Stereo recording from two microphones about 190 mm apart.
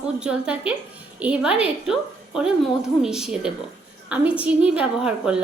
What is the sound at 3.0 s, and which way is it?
A woman's voice, 5° right (ahead or behind).